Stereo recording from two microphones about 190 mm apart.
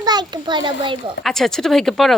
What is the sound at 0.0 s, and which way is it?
A child's voice, 20° right (ahead or behind).